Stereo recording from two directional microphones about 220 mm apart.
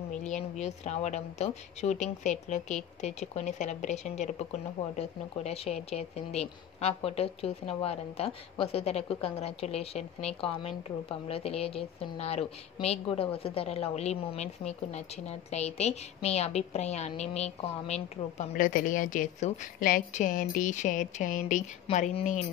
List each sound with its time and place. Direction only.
0.1 s speech: 30° left (ahead or behind)